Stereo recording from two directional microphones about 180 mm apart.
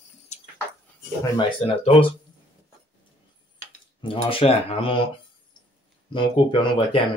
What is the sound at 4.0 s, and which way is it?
Speech, 30° left (ahead or behind).